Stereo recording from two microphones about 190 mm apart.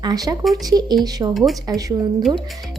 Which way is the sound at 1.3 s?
Centre (ahead or behind).